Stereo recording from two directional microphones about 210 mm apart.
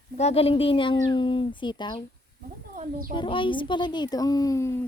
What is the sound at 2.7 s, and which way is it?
Speech, 40° right (ahead or behind).